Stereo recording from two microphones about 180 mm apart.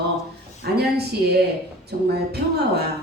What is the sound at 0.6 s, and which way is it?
A woman's voice, 60° right (ahead or behind).